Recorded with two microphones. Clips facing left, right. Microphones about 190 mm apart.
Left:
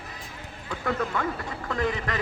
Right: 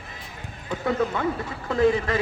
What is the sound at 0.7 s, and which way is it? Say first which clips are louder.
Speech: right 4 dB; 20° right (ahead or behind).